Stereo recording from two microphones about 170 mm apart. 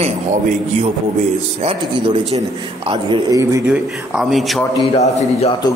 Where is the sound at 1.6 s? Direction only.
30° right (ahead or behind).